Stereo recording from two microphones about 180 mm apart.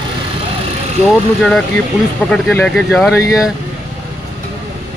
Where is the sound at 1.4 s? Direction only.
5° left (ahead or behind).